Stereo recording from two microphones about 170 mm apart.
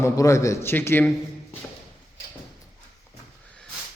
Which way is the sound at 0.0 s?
20° left (ahead or behind).